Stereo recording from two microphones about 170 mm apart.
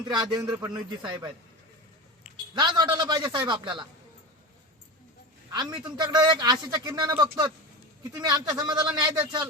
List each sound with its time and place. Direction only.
0.0 s a man's voice: 25° right (ahead or behind)
2.6 s a man's voice: 25° right (ahead or behind)
5.5 s a man's voice: 25° right (ahead or behind)